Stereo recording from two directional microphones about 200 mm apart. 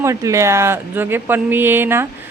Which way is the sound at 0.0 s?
15° right (ahead or behind).